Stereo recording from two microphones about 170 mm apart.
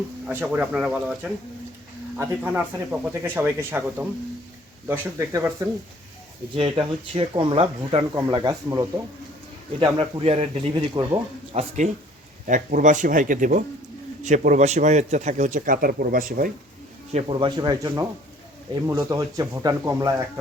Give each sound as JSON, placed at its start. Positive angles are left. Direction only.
{"t": 0.3, "sound": "speech", "side_deg": -10}
{"t": 6.6, "sound": "speech", "side_deg": -30}
{"t": 10.0, "sound": "speech", "side_deg": -35}
{"t": 10.8, "sound": "speech", "side_deg": -25}
{"t": 11.5, "sound": "speech", "side_deg": -40}
{"t": 12.5, "sound": "speech", "side_deg": -50}
{"t": 17.1, "sound": "speech", "side_deg": -35}